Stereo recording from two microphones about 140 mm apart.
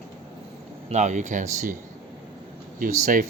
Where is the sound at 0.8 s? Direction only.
55° right (ahead or behind).